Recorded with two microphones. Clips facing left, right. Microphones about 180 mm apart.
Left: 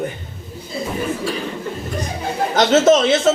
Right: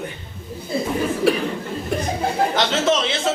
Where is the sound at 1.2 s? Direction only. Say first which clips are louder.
Right 6 dB; 65° right (ahead or behind).